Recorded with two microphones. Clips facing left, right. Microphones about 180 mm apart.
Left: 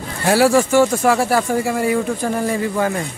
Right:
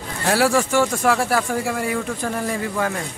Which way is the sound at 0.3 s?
Centre (ahead or behind).